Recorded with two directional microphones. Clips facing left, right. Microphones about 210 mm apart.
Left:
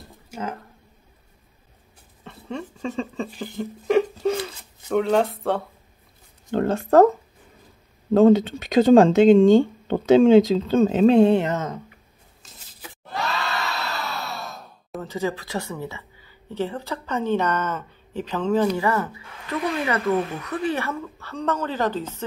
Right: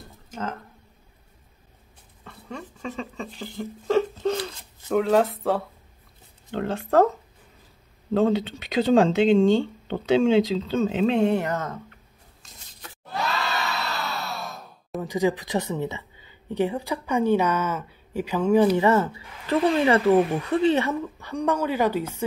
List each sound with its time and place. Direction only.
0.3 s speech: 10° left (ahead or behind)
2.2 s a sound: 25° left (ahead or behind)
3.3 s speech: 15° left (ahead or behind); by 5.6 s centre (ahead or behind)
6.5 s speech: 45° left (ahead or behind)
8.1 s speech: 45° left (ahead or behind); by 11.8 s 20° left (ahead or behind)
12.4 s crowd: centre (ahead or behind)
15.0 s speech: 15° right (ahead or behind)